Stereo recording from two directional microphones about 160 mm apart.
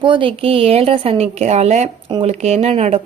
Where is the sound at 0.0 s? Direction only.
30° right (ahead or behind).